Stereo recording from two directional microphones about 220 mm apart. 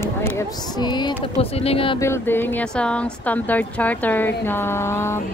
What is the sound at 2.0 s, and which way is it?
A woman's voice, 10° left (ahead or behind).